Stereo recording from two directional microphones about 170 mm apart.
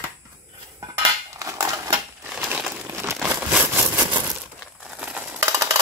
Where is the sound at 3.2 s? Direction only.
10° right (ahead or behind).